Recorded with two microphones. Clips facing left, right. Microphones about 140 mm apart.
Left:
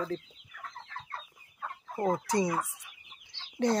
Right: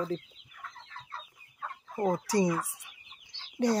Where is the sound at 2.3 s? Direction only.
30° right (ahead or behind).